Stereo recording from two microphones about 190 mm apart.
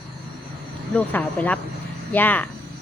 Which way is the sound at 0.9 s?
10° left (ahead or behind).